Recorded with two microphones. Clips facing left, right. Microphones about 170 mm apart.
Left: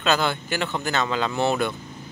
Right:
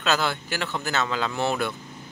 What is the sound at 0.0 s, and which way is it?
Speech, centre (ahead or behind).